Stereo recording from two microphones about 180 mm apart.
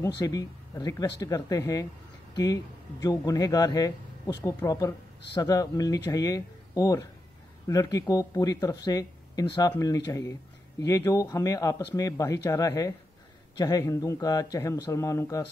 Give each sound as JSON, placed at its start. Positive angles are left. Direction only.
{"t": 0.0, "sound": "speech", "side_deg": 20}